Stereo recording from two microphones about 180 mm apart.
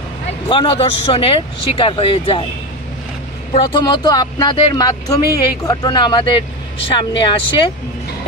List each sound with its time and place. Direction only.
0.5 s speech: 30° left (ahead or behind)
3.5 s speech: 25° left (ahead or behind)